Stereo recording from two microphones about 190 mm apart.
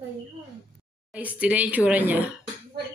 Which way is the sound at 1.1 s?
10° right (ahead or behind).